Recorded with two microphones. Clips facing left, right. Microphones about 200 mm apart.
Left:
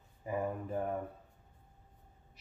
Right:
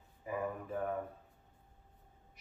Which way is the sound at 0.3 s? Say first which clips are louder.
Left 2 dB; 30° left (ahead or behind).